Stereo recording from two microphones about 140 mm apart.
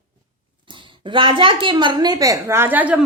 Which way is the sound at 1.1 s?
35° right (ahead or behind).